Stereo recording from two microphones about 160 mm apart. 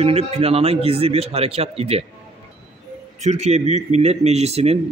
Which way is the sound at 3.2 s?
45° right (ahead or behind).